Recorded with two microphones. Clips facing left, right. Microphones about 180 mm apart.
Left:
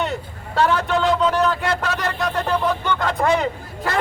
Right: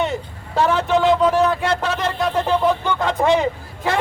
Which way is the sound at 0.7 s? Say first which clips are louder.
Right 3 dB; centre (ahead or behind).